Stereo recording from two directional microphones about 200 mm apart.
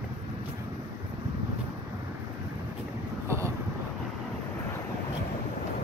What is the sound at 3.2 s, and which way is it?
Wind noise, 15° right (ahead or behind).